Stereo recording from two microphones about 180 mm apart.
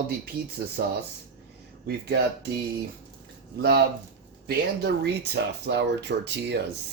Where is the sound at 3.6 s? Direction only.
65° right (ahead or behind).